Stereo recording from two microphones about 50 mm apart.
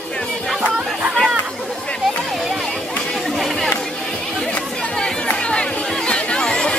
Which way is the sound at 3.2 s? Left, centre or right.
Centre.